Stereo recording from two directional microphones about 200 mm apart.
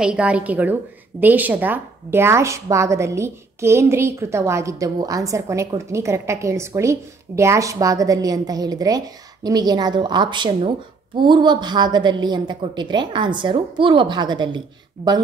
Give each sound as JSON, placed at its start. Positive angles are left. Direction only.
{"t": 0.0, "sound": "a woman's voice", "side_deg": -5}